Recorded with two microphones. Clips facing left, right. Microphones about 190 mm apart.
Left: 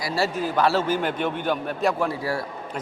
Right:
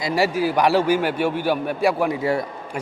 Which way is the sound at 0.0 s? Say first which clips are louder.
Right 5 dB; 15° right (ahead or behind).